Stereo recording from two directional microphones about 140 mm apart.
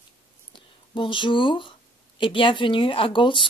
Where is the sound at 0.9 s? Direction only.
35° left (ahead or behind).